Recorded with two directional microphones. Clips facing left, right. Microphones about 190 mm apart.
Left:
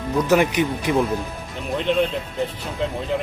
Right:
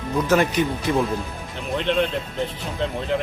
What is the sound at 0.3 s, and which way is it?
Speech, 15° left (ahead or behind).